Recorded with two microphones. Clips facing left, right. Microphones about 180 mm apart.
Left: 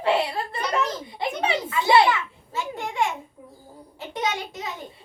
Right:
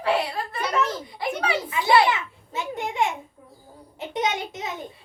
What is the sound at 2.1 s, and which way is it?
Speech, 20° right (ahead or behind).